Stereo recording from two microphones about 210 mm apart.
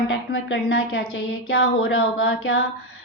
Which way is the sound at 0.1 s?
60° left (ahead or behind).